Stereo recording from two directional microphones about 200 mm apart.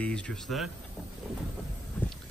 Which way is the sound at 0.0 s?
5° left (ahead or behind).